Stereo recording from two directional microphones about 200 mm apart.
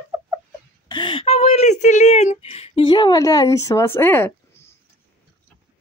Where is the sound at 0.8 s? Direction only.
25° left (ahead or behind).